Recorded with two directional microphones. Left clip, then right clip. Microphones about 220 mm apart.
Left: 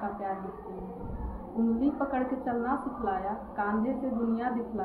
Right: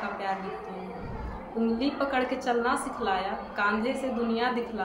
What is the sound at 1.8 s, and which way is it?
A woman's voice, 20° right (ahead or behind).